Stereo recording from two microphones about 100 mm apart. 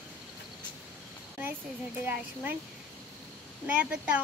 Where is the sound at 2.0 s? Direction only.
20° right (ahead or behind).